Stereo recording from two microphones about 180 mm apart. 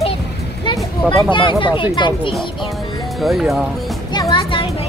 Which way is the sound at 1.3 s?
25° left (ahead or behind).